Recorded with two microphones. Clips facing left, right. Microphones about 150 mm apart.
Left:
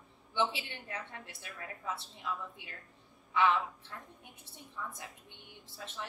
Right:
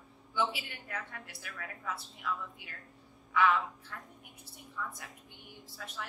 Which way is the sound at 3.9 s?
25° left (ahead or behind).